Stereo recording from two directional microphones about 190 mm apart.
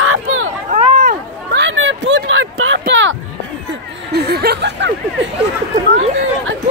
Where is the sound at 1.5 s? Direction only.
80° right.